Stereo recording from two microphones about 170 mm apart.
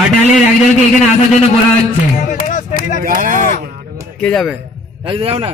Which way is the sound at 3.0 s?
55° right (ahead or behind).